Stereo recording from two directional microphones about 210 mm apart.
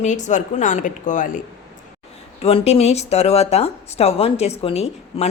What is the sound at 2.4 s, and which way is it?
A woman's voice, 30° left (ahead or behind).